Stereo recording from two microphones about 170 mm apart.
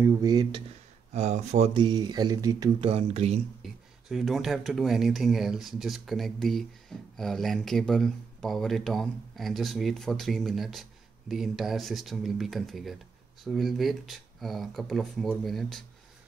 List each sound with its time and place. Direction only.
0.0 s speech: 20° right (ahead or behind)
1.1 s speech: 40° right (ahead or behind)
1.7 s speech: 25° right (ahead or behind)
2.9 s speech: 35° right (ahead or behind)
3.6 s speech: centre (ahead or behind)